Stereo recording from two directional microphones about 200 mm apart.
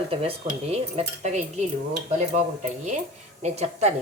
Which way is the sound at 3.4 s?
35° right (ahead or behind).